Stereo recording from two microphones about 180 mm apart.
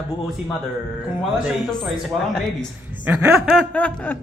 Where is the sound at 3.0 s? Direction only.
10° right (ahead or behind); by 4.1 s 5° left (ahead or behind).